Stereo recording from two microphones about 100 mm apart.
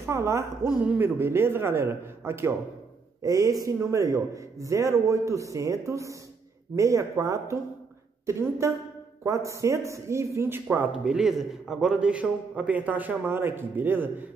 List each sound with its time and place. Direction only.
0.0 s a man's voice: 30° right (ahead or behind)
10.9 s a man's voice: 5° right (ahead or behind)